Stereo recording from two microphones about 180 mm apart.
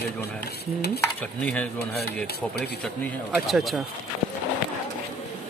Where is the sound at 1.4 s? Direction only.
5° left (ahead or behind).